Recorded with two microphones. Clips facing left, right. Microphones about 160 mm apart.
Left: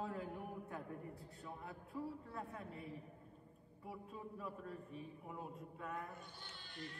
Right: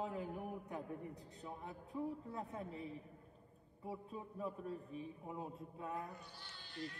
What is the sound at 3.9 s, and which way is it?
Speech, 25° right (ahead or behind).